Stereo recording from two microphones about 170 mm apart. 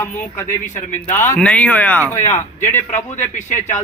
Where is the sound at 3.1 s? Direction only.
45° left (ahead or behind).